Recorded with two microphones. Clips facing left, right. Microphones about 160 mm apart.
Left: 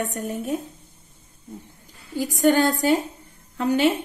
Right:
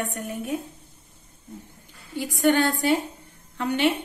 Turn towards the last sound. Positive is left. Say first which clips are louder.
# left 4 dB
turn(degrees=40)  # may be behind; listen again after turning